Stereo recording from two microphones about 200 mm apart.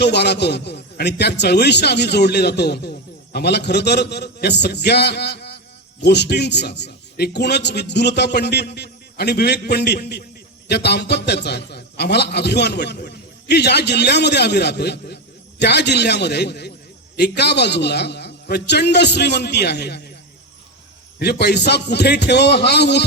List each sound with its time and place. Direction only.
0.0 s a man's voice: 55° left (ahead or behind)
21.2 s a man's voice: 55° left (ahead or behind)